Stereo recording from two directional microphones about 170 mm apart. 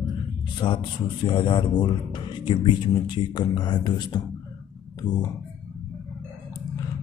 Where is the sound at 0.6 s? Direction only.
25° left (ahead or behind).